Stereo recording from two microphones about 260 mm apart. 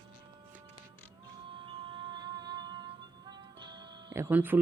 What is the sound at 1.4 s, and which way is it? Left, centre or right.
Music, centre.